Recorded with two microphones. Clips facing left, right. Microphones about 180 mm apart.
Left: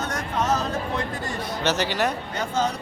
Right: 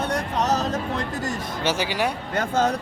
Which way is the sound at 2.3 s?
55° right (ahead or behind).